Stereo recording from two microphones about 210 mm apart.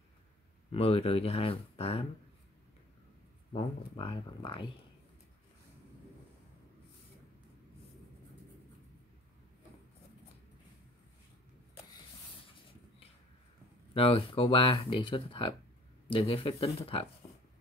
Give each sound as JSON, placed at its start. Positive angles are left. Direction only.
{"t": 0.7, "sound": "speech", "side_deg": 30}
{"t": 3.5, "sound": "speech", "side_deg": 25}
{"t": 13.9, "sound": "speech", "side_deg": 25}